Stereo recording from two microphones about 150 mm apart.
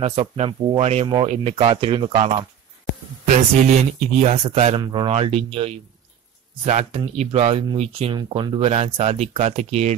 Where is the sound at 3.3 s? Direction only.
50° right (ahead or behind).